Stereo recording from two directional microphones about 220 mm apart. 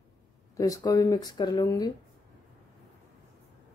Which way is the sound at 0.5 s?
15° left (ahead or behind).